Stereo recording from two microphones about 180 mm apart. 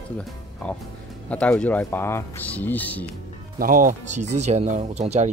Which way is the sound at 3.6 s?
50° right (ahead or behind).